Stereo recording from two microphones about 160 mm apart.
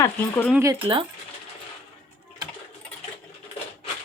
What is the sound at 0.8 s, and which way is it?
Speech, 30° right (ahead or behind).